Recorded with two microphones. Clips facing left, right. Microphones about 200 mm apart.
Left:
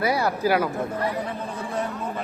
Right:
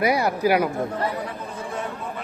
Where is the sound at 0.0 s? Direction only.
15° right (ahead or behind).